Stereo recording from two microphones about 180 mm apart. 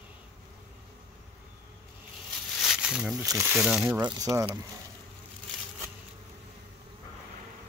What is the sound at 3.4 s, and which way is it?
Speech, 5° right (ahead or behind).